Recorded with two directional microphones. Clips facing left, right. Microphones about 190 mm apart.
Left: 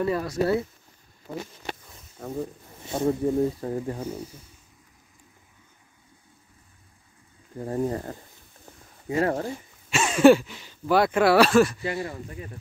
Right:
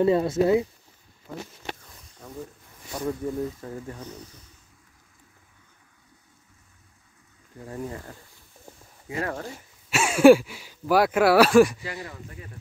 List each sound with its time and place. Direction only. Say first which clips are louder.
0.0 s speech: right 4 dB; 25° right (ahead or behind)
2.1 s speech: left 7 dB; 45° left (ahead or behind)
2.8 s speech: left 5 dB; 25° left (ahead or behind)
4.2 s a sound: left 7 dB; 10° left (ahead or behind)
7.5 s speech: left 8 dB; 40° left (ahead or behind)
9.8 s speech: right 1 dB; 10° right (ahead or behind)
11.8 s speech: left 6 dB; 20° left (ahead or behind)